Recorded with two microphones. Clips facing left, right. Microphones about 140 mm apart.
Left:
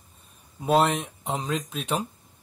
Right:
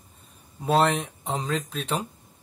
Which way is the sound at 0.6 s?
10° left (ahead or behind).